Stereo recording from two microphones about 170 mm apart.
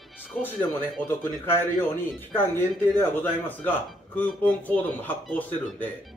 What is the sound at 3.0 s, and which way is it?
Speech, 10° left (ahead or behind).